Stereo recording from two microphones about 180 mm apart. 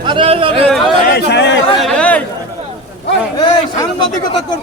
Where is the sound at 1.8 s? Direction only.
5° left (ahead or behind).